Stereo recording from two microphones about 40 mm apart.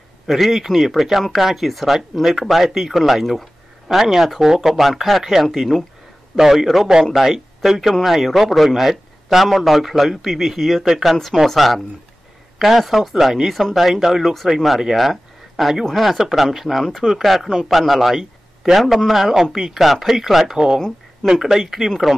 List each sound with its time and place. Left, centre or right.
0.3 s speech: centre
20.5 s speech: centre